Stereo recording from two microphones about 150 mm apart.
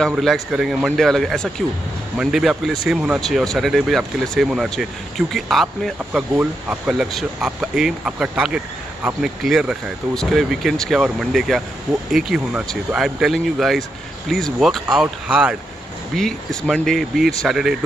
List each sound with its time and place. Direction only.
0.0 s speech: centre (ahead or behind)